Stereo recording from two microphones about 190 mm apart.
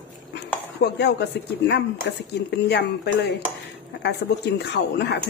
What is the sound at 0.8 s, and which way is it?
Speech, 60° left (ahead or behind).